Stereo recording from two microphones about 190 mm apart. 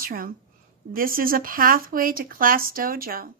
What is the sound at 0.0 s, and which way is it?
A woman's voice, 50° right (ahead or behind).